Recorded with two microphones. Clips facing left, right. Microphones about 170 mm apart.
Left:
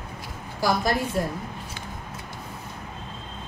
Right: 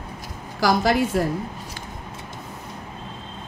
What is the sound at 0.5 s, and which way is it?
Speech, 90° right.